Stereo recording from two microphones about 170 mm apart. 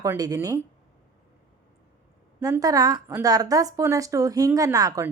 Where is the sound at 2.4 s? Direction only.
20° right (ahead or behind).